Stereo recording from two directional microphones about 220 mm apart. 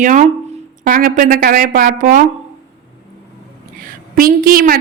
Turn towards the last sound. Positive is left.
turn(degrees=-40)  # may be behind; listen again after turning